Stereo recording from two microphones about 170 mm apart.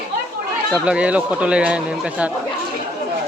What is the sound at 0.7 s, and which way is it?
A man's voice, 5° right (ahead or behind).